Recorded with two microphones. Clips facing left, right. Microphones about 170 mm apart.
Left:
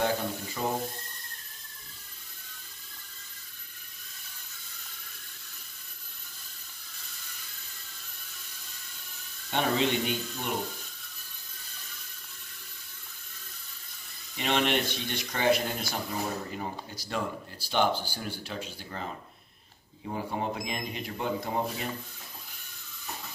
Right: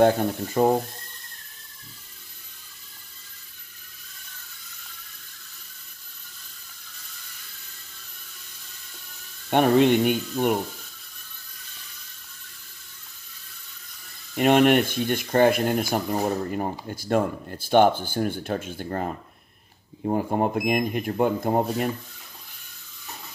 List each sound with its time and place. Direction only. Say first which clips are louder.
0.6 s speech: right 12 dB; 50° right (ahead or behind)
9.5 s speech: right 10 dB; 55° right (ahead or behind)
14.3 s speech: right 10 dB; 50° right (ahead or behind)